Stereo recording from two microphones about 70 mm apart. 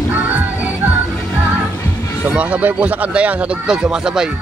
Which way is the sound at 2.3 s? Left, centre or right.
Centre.